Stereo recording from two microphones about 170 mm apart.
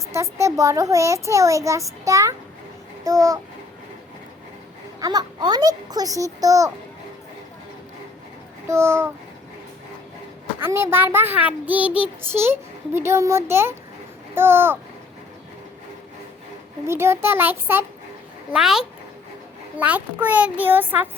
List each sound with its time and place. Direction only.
0.1 s a child's voice: 15° right (ahead or behind)
3.0 s a sound: 20° right (ahead or behind)
4.9 s a child's voice: 25° right (ahead or behind)
8.6 s a child's voice: 15° right (ahead or behind)
10.6 s a child's voice: 15° right (ahead or behind)
16.8 s a child's voice: 15° right (ahead or behind)